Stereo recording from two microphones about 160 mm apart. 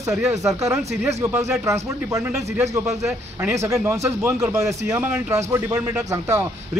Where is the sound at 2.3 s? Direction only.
5° right (ahead or behind).